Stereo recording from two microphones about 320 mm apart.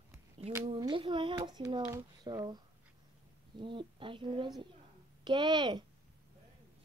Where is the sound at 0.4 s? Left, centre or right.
Centre.